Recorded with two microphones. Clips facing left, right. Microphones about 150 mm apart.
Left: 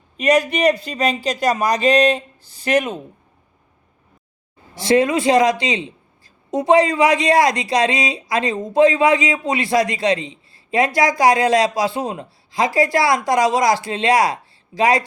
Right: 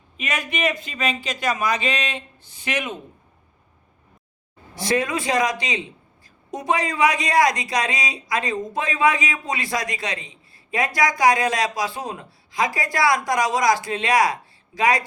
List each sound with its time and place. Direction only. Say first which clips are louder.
0.2 s speech: left 10 dB; 35° left (ahead or behind)
4.7 s speech: left 7 dB; 30° left (ahead or behind)